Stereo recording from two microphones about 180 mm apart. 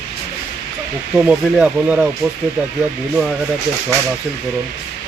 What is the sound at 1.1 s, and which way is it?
Speech, 5° right (ahead or behind).